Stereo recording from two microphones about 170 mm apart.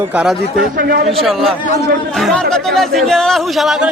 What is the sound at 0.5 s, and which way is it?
Speech, 60° right (ahead or behind).